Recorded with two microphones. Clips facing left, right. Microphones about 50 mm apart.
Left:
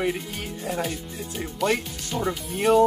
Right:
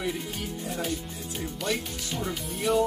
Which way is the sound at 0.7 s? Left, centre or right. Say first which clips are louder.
Left 7 dB; left.